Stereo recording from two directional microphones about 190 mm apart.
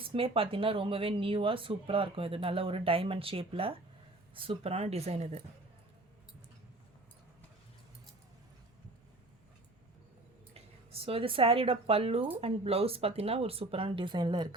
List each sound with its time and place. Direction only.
0.1 s speech: 30° right (ahead or behind)
10.5 s speech: 30° right (ahead or behind)